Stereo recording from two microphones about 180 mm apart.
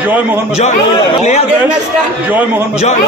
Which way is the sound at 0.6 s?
40° left (ahead or behind).